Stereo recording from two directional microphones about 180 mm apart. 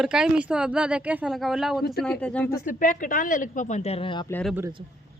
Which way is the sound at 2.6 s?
45° left (ahead or behind).